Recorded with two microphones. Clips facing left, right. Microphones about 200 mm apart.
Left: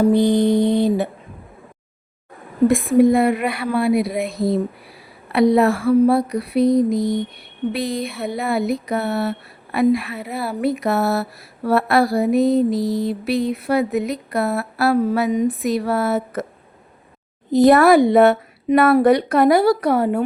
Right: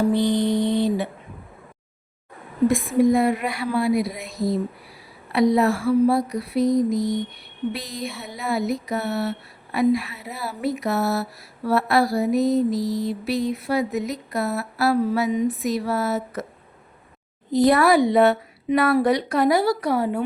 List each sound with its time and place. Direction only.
0.2 s mantra: 50° left (ahead or behind)
2.6 s speech: 55° left (ahead or behind)
17.7 s speech: 55° left (ahead or behind)